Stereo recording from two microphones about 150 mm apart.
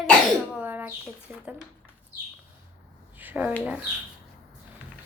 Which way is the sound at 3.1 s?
10° right (ahead or behind).